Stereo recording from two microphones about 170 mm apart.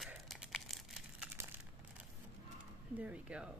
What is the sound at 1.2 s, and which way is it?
Crumpling, 10° right (ahead or behind).